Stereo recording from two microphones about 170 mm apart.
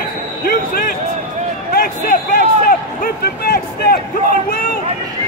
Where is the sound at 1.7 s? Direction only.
55° left (ahead or behind).